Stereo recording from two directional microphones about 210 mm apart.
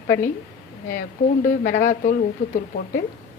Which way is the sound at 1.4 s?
40° left (ahead or behind).